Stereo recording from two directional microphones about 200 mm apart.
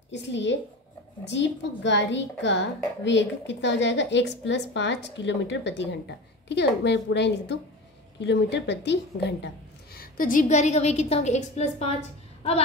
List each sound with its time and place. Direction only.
0.1 s a woman's voice: 60° left (ahead or behind)
9.9 s a woman's voice: 45° left (ahead or behind)